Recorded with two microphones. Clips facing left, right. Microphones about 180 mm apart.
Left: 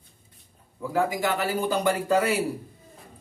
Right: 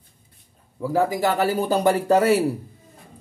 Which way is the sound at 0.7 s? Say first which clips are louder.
Right 4 dB; 35° right (ahead or behind).